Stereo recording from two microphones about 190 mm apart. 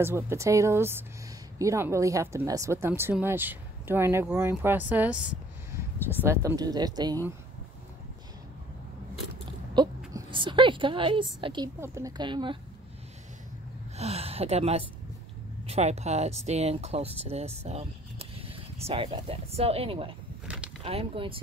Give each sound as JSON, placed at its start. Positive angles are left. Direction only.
{"t": 0.0, "sound": "speech", "side_deg": -15}
{"t": 9.8, "sound": "a woman's voice", "side_deg": -25}
{"t": 13.9, "sound": "a woman's voice", "side_deg": -35}
{"t": 20.4, "sound": "vehicle", "side_deg": -5}
{"t": 20.8, "sound": "speech", "side_deg": -30}